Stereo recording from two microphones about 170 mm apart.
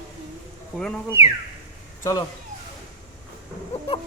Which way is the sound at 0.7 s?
5° left (ahead or behind).